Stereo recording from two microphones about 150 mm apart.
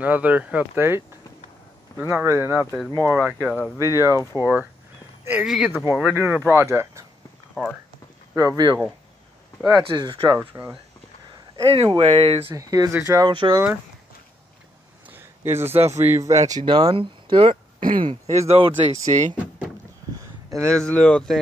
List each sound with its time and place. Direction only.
0.0 s speech: 10° right (ahead or behind)
5.4 s speech: 5° right (ahead or behind)
5.7 s speech: 15° right (ahead or behind)
8.4 s speech: 25° right (ahead or behind)
11.5 s speech: 40° right (ahead or behind)
12.4 s speech: 25° right (ahead or behind)
15.0 s a sound: 15° right (ahead or behind)
16.0 s speech: 15° right (ahead or behind)
16.3 s speech: 50° right (ahead or behind)
16.6 s speech: 30° right (ahead or behind)
17.7 s a sound: 65° right (ahead or behind)
18.0 s speech: 45° right (ahead or behind)
20.7 s speech: 5° left (ahead or behind)